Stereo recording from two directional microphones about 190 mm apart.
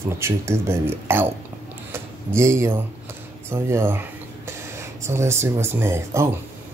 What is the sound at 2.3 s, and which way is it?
Speech, 15° right (ahead or behind).